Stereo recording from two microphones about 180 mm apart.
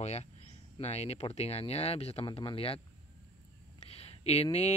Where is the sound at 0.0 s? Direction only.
35° left (ahead or behind).